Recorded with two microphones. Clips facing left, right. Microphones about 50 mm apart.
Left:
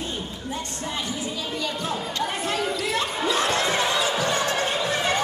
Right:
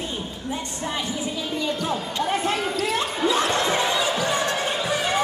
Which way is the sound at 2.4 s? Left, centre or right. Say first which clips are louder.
Right 2 dB; right.